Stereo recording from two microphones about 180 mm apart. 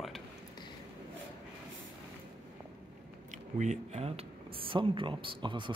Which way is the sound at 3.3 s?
40° right (ahead or behind).